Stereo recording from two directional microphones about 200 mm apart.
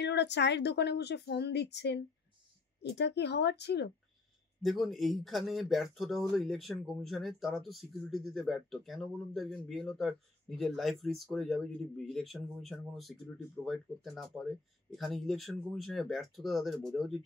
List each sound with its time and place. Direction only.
0.0 s a woman's voice: 60° left (ahead or behind)
4.6 s speech: centre (ahead or behind)